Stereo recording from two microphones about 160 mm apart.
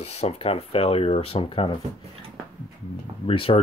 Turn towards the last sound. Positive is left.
turn(degrees=35)  # may be behind; listen again after turning